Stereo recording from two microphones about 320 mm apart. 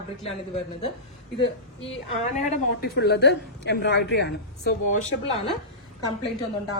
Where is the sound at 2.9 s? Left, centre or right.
Left.